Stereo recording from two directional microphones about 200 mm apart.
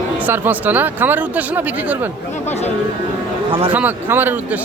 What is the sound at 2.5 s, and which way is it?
Speech, 35° left (ahead or behind).